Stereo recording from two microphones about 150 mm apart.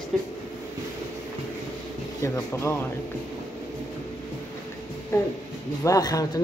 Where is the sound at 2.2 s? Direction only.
20° left (ahead or behind).